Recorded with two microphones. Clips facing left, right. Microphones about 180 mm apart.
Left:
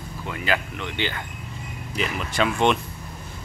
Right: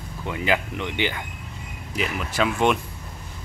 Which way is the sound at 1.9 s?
5° right (ahead or behind).